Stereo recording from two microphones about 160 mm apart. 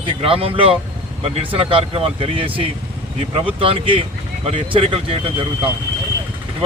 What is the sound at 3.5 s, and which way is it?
Speech, 35° right (ahead or behind).